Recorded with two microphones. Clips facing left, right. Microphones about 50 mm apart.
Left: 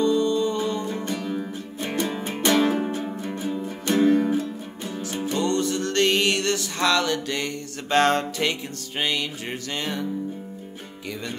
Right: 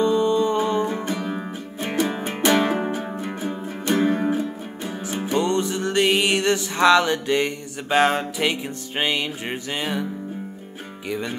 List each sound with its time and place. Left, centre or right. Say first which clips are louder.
0.0 s music: right 2 dB; right
11.1 s music: right 5 dB; centre